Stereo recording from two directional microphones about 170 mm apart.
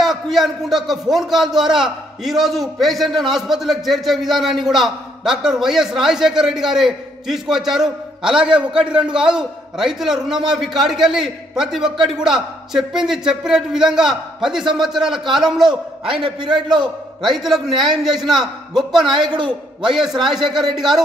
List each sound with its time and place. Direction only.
0.0 s a man's voice: centre (ahead or behind)
16.4 s a man's voice: 25° right (ahead or behind)
17.2 s a man's voice: centre (ahead or behind)